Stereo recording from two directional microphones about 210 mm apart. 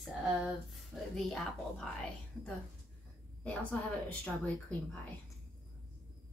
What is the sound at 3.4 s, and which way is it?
A woman's voice, 5° left (ahead or behind).